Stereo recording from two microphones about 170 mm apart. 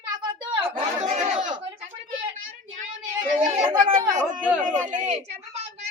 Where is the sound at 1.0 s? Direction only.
45° right (ahead or behind).